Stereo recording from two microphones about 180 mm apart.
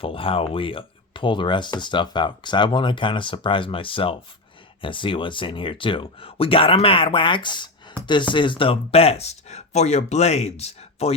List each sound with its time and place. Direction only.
0.0 s speech: 30° left (ahead or behind)